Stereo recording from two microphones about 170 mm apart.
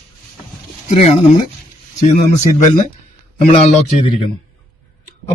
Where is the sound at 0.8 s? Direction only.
40° left (ahead or behind).